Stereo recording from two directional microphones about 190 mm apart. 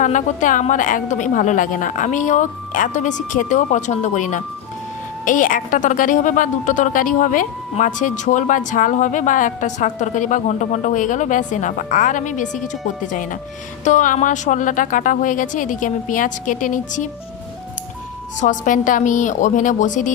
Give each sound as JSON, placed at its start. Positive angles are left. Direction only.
{"t": 0.0, "sound": "a woman's voice", "side_deg": 40}
{"t": 18.3, "sound": "a woman's voice", "side_deg": 40}